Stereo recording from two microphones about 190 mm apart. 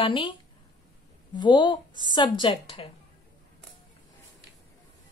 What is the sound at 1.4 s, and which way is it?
Speech, 25° left (ahead or behind).